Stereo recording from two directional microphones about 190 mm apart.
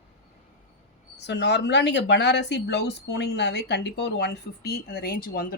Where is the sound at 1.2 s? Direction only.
65° left (ahead or behind); by 5.4 s 50° left (ahead or behind).